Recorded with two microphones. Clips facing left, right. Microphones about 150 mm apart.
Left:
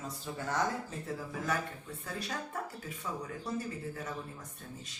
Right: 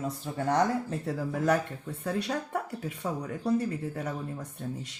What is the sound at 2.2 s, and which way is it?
Speech, 65° right (ahead or behind).